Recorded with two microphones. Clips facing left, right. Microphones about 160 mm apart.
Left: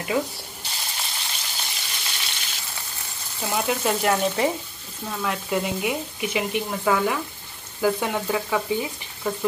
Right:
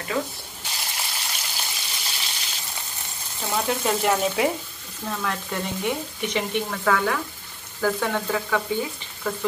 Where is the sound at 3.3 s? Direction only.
5° left (ahead or behind).